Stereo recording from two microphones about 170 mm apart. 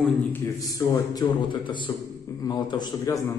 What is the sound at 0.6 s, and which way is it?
A man's voice, 20° left (ahead or behind).